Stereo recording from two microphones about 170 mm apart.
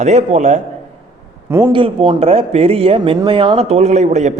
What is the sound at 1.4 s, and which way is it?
Speech, 15° right (ahead or behind).